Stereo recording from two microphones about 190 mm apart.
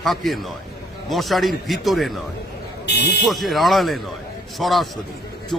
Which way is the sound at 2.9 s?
60° left (ahead or behind).